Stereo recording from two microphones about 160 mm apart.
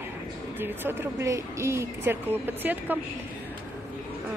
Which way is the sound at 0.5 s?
15° right (ahead or behind).